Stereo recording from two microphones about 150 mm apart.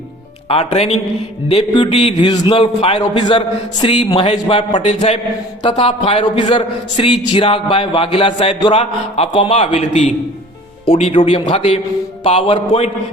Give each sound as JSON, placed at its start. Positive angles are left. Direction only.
{"t": 0.4, "sound": "a man's voice", "side_deg": 40}
{"t": 2.3, "sound": "a man's voice", "side_deg": 30}